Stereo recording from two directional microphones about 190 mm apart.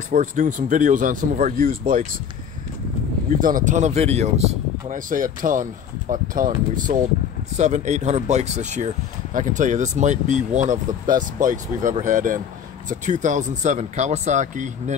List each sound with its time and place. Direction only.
0.1 s speech: 45° right (ahead or behind)
3.3 s speech: 45° right (ahead or behind)
7.5 s speech: 40° right (ahead or behind)